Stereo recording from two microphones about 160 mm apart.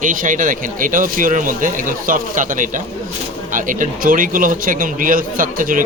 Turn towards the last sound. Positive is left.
turn(degrees=-60)  # may be behind; listen again after turning